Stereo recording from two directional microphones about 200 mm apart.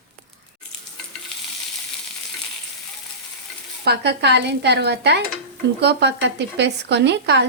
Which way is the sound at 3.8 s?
55° right (ahead or behind).